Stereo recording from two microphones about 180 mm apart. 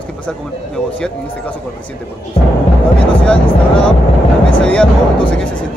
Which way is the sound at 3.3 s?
5° left (ahead or behind).